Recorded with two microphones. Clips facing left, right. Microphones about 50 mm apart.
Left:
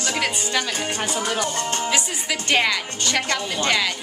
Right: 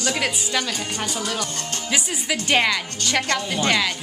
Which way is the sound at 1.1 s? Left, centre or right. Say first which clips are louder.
Left 3 dB; left.